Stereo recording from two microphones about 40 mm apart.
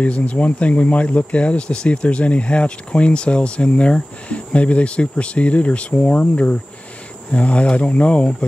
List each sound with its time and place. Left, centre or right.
0.0 s speech: left